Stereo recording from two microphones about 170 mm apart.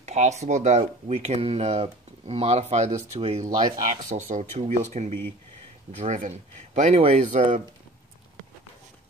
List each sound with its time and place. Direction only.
0.0 s speech: 40° right (ahead or behind)
3.5 s speech: 25° right (ahead or behind)
4.0 s speech: 45° right (ahead or behind)